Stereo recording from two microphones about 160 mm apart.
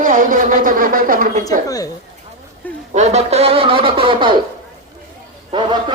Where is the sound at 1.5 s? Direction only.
20° left (ahead or behind).